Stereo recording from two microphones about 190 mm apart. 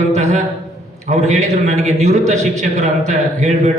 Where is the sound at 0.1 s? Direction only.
35° right (ahead or behind).